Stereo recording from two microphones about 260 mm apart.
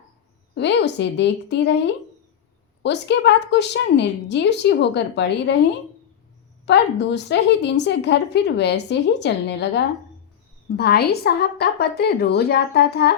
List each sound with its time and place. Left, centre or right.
0.5 s a woman's voice: left
6.7 s a woman's voice: left